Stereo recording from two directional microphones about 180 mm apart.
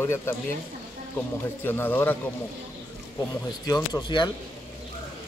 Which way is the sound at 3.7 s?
20° left (ahead or behind).